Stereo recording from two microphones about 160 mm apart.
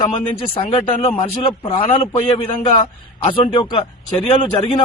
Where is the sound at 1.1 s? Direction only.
30° left (ahead or behind).